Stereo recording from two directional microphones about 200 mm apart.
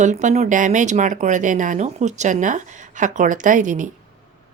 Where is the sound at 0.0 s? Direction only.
35° right (ahead or behind).